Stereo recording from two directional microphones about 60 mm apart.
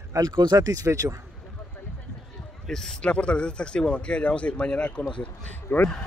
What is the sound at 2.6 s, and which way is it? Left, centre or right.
Speech, centre.